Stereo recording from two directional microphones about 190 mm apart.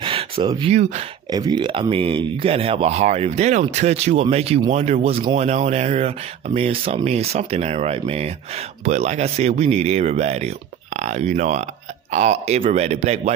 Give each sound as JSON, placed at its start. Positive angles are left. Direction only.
{"t": 0.0, "sound": "speech", "side_deg": -25}
{"t": 1.3, "sound": "speech", "side_deg": -20}